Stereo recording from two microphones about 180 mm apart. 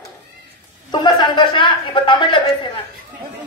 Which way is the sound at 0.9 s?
25° left (ahead or behind).